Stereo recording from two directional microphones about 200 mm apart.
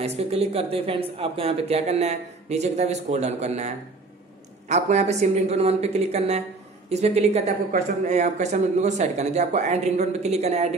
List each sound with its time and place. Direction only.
0.0 s speech: 30° right (ahead or behind)